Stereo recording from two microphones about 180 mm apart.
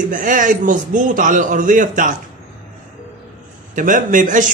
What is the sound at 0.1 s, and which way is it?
A man's voice, 45° right (ahead or behind).